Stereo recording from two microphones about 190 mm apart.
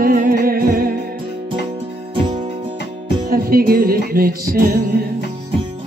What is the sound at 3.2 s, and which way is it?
Music, 50° right (ahead or behind).